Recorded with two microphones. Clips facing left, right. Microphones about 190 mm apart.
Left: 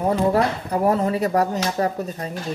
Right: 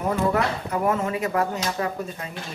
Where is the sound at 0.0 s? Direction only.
35° left (ahead or behind).